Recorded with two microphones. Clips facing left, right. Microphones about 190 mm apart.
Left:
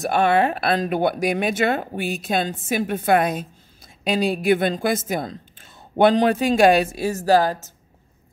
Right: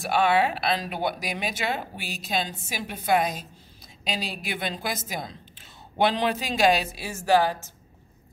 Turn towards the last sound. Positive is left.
turn(degrees=40)  # may be behind; listen again after turning